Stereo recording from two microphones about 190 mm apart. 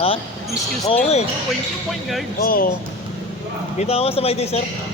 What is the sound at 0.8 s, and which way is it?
Speech, 35° left (ahead or behind).